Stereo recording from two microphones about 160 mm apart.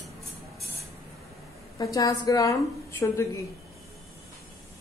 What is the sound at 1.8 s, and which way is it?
Speech, 20° left (ahead or behind).